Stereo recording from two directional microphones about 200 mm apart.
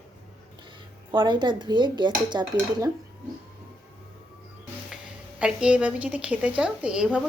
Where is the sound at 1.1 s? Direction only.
25° right (ahead or behind).